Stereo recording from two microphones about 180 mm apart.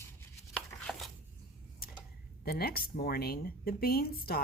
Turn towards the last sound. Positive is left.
turn(degrees=55)  # may be behind; listen again after turning